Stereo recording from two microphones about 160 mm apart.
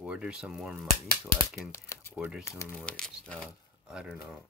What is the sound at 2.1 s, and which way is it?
Speech, 5° right (ahead or behind).